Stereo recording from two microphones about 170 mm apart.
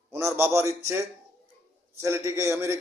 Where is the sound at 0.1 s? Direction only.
15° right (ahead or behind).